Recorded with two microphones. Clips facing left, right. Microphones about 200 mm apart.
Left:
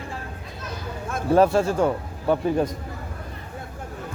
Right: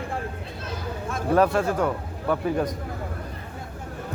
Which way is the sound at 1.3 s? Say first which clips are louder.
Left 3 dB; 25° left (ahead or behind).